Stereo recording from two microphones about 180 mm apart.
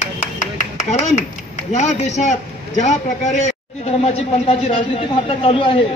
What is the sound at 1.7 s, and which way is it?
A man's voice, 40° left (ahead or behind).